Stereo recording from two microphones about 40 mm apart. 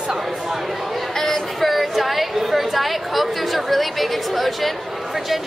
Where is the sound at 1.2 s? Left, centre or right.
Centre.